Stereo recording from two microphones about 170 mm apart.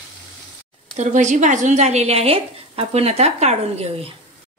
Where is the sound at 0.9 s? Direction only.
45° right (ahead or behind).